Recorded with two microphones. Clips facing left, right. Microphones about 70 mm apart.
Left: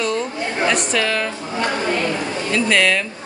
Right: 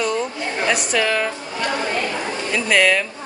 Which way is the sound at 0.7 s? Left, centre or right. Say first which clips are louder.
Right 1 dB; centre.